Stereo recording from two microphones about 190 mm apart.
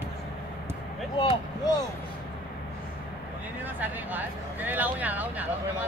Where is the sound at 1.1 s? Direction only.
25° left (ahead or behind).